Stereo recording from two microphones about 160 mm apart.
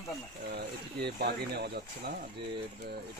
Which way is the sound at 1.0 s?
90° right.